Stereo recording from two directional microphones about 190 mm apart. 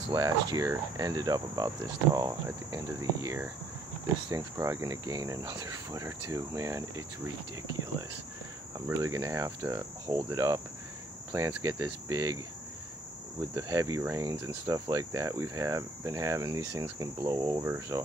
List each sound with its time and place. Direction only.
0.1 s cricket: 20° right (ahead or behind)
8.8 s cricket: 15° right (ahead or behind)
13.6 s cricket: 15° right (ahead or behind)